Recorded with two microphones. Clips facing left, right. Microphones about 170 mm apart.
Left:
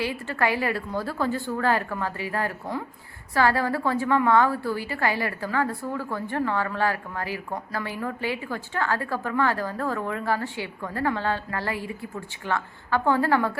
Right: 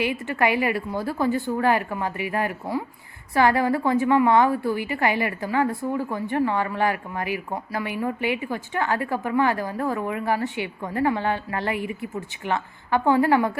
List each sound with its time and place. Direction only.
0.0 s a woman's voice: 15° right (ahead or behind)